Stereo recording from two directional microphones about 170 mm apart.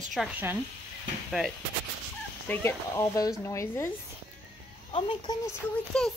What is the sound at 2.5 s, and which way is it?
Speech, 15° left (ahead or behind).